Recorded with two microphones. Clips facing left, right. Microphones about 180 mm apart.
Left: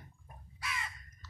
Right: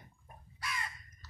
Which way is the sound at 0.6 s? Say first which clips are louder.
Even; centre (ahead or behind).